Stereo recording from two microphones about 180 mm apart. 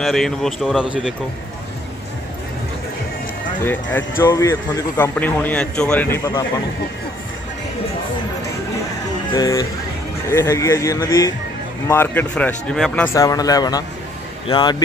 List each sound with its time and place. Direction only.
0.0 s speech: centre (ahead or behind)
3.6 s a man's voice: 10° left (ahead or behind)
9.3 s a man's voice: 20° left (ahead or behind)
13.1 s speech: 20° left (ahead or behind)